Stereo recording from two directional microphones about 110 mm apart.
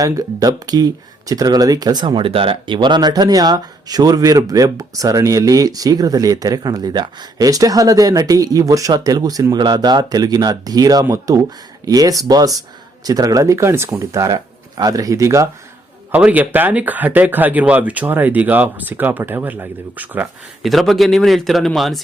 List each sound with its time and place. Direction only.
0.0 s speech: 35° right (ahead or behind)
16.1 s speech: 15° right (ahead or behind)
20.6 s a man's voice: centre (ahead or behind)